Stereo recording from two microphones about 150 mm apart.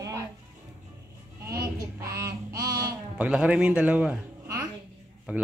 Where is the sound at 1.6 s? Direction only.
20° right (ahead or behind).